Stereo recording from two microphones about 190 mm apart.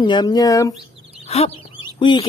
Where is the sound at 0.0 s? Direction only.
25° left (ahead or behind).